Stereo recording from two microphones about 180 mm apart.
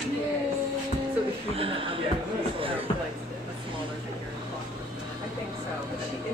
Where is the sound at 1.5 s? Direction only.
30° right (ahead or behind).